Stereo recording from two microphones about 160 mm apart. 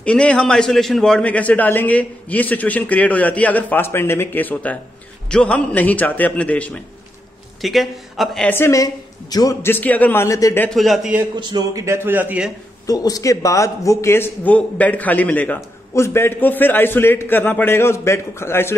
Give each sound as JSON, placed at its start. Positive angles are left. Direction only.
{"t": 0.0, "sound": "a man's voice", "side_deg": 5}
{"t": 8.5, "sound": "a man's voice", "side_deg": 15}
{"t": 10.7, "sound": "a man's voice", "side_deg": 0}
{"t": 11.3, "sound": "a man's voice", "side_deg": -25}
{"t": 12.8, "sound": "a man's voice", "side_deg": 20}